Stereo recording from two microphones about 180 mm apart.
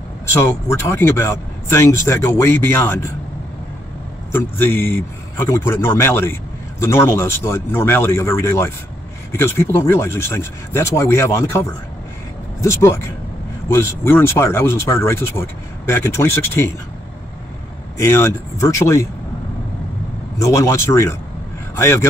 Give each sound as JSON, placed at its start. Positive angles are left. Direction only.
{"t": 0.3, "sound": "a man's voice", "side_deg": 15}
{"t": 4.3, "sound": "a man's voice", "side_deg": 10}
{"t": 12.6, "sound": "a man's voice", "side_deg": 15}
{"t": 17.9, "sound": "a man's voice", "side_deg": 15}
{"t": 20.3, "sound": "a man's voice", "side_deg": 15}